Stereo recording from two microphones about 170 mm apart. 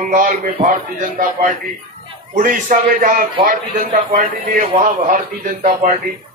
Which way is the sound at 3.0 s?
50° right (ahead or behind).